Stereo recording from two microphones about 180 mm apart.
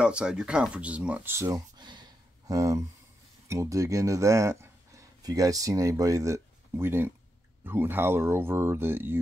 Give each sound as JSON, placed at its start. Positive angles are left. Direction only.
{"t": 0.0, "sound": "speech", "side_deg": -5}